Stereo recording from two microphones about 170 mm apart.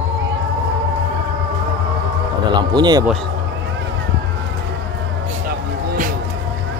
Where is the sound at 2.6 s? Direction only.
25° right (ahead or behind).